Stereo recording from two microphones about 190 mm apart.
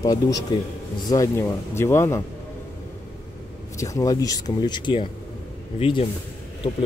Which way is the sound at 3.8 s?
15° left (ahead or behind).